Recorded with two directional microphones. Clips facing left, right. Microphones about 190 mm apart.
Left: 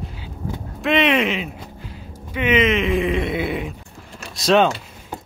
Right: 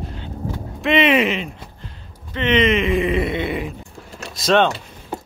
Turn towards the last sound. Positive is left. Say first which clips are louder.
# even
turn(degrees=0)  # may be behind; listen again after turning